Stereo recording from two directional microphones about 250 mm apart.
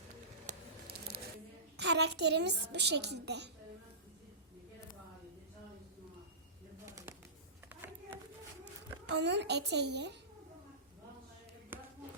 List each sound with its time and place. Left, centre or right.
0.4 s a sound: right
1.7 s a woman's voice: right
8.6 s a child's voice: right